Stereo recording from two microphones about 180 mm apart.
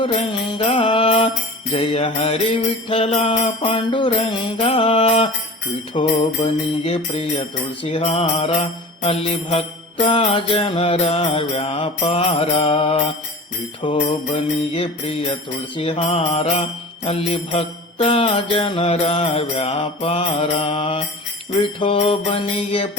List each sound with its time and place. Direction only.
0.0 s mantra: 30° left (ahead or behind)
1.7 s jingle bell: 35° left (ahead or behind)